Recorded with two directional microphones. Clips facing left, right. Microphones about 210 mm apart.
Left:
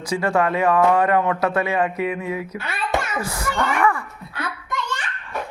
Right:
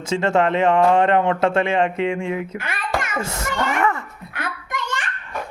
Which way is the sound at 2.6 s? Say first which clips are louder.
Right 1 dB; 50° right (ahead or behind).